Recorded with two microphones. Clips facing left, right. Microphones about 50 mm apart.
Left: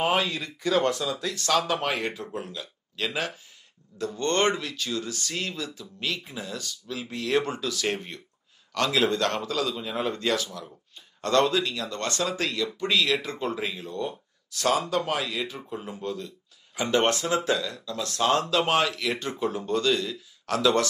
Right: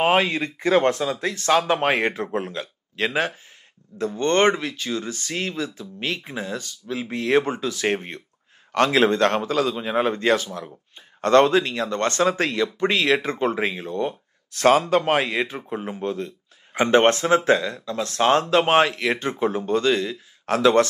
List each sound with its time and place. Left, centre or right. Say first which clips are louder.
0.0 s speech: right 6 dB; right